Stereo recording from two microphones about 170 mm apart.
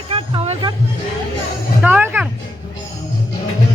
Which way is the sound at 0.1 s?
35° right (ahead or behind).